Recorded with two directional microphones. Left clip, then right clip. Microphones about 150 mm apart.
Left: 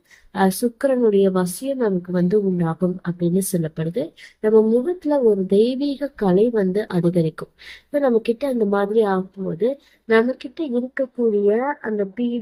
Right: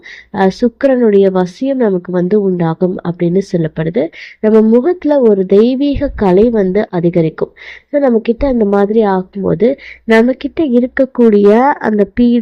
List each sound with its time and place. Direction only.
0.3 s speech: 50° right (ahead or behind)
11.5 s a woman's voice: 70° right (ahead or behind)